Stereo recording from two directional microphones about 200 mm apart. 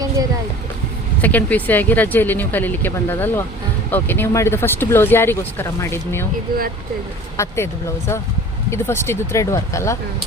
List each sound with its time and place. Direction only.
1.2 s speech: 10° left (ahead or behind)
6.5 s speech: 45° right (ahead or behind)
7.3 s speech: 15° left (ahead or behind)